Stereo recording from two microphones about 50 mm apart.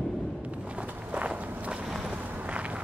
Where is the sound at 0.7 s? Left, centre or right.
Right.